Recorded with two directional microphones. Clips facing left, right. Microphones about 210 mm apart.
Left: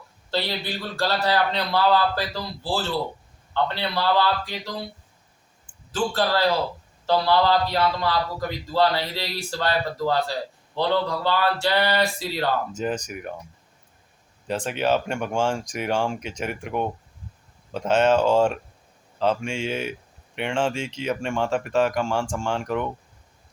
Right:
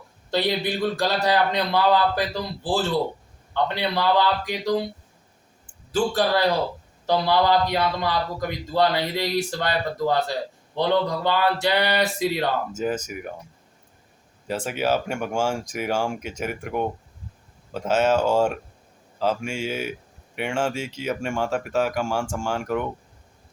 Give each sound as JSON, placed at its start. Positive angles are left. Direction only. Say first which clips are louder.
{"t": 0.3, "sound": "a man's voice", "louder": "right 4 dB", "side_deg": -15}
{"t": 3.5, "sound": "a man's voice", "louder": "right 1 dB", "side_deg": -15}
{"t": 5.9, "sound": "a man's voice", "louder": "right 2 dB", "side_deg": -15}
{"t": 12.7, "sound": "speech", "louder": "right 1 dB", "side_deg": -5}
{"t": 14.4, "sound": "a man's voice", "louder": "left 1 dB", "side_deg": -5}